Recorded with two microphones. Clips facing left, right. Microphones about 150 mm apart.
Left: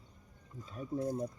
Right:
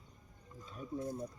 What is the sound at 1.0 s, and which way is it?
Speech, 35° left (ahead or behind).